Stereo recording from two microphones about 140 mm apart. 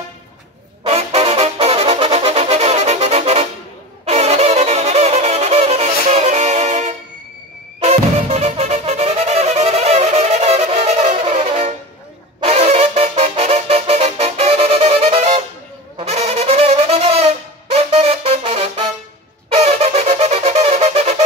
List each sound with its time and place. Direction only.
0.8 s music: 45° right (ahead or behind)
16.0 s brass instrument: 50° right (ahead or behind)
19.5 s music: 50° right (ahead or behind)